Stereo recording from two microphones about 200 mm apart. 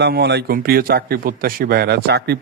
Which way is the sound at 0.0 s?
55° right (ahead or behind).